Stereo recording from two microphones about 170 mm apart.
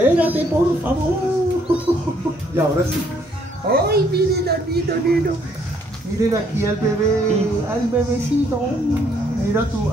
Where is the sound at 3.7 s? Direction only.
65° right (ahead or behind).